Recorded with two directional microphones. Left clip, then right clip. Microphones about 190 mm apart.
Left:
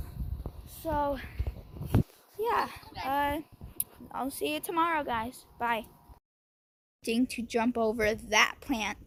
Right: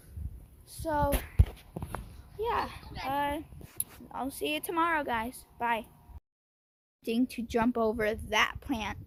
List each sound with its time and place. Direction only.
0.9 s speech: 20° right (ahead or behind)
2.4 s speech: centre (ahead or behind)
4.6 s speech: 20° right (ahead or behind)
5.5 s speech: 10° right (ahead or behind)
7.0 s speech: 10° right (ahead or behind)